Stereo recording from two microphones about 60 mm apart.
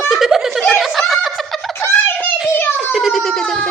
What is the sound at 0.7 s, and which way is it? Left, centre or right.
Snicker, centre.